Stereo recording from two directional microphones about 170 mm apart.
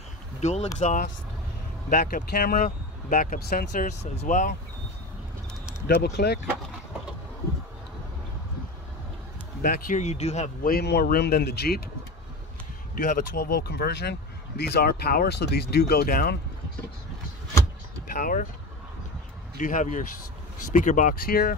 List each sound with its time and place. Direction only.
0.4 s speech: 40° left (ahead or behind); by 3.8 s 65° left (ahead or behind)
3.8 s speech: 40° left (ahead or behind)
5.9 s speech: 70° left (ahead or behind)
9.6 s speech: 55° left (ahead or behind); by 10.5 s 40° left (ahead or behind)
10.6 s speech: 65° left (ahead or behind)
12.9 s speech: 55° left (ahead or behind)
18.1 s speech: 55° left (ahead or behind)
19.6 s speech: 50° left (ahead or behind)